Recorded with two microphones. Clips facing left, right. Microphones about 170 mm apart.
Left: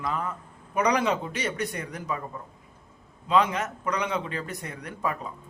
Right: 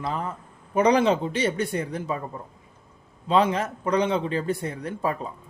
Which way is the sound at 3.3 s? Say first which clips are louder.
Right 2 dB; 30° right (ahead or behind).